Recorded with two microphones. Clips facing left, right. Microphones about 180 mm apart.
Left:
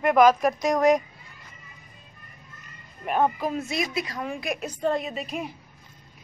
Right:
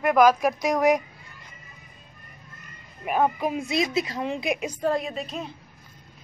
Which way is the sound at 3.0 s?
5° right (ahead or behind).